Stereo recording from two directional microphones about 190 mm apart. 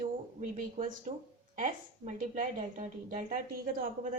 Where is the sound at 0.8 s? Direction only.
40° right (ahead or behind).